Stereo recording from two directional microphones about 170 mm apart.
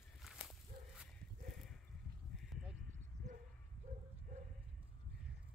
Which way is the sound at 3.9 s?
50° right (ahead or behind).